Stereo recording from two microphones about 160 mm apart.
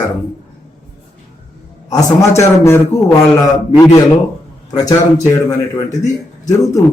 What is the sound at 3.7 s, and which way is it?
Mantra, 25° left (ahead or behind).